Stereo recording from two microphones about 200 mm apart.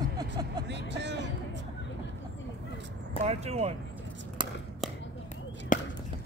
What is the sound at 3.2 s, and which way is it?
Vehicle, 30° right (ahead or behind).